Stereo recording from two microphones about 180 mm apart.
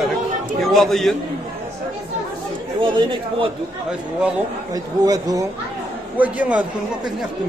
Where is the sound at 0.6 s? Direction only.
Centre (ahead or behind).